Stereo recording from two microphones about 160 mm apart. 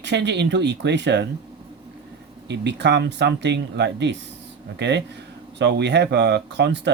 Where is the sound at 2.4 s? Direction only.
90° right.